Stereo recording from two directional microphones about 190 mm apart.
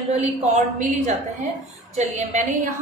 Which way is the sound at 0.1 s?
35° right (ahead or behind).